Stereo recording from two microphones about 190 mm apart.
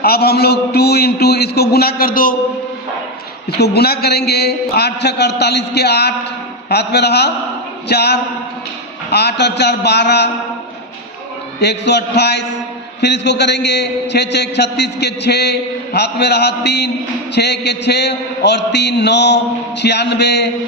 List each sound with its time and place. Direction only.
0.0 s a man's voice: 55° left (ahead or behind)
3.5 s a man's voice: 60° left (ahead or behind)
11.6 s a man's voice: 60° left (ahead or behind)